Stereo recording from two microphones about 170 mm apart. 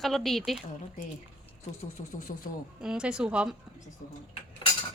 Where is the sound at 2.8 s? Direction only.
5° right (ahead or behind).